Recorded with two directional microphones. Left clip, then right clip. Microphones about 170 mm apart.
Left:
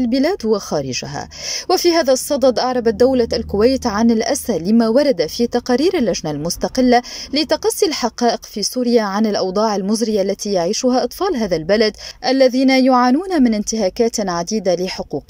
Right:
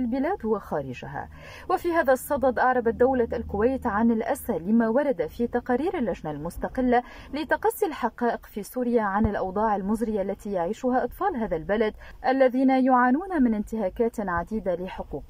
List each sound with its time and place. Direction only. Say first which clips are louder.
0.1 s speech: left 9 dB; 20° left (ahead or behind)